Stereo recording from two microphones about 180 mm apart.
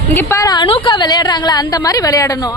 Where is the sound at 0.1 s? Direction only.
15° left (ahead or behind).